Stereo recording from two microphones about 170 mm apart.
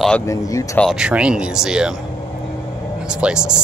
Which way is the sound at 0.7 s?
Centre (ahead or behind).